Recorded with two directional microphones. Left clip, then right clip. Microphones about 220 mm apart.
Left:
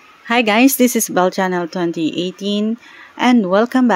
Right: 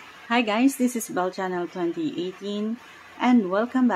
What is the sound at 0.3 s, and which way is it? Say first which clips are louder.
Speech: left 9 dB; 35° left (ahead or behind).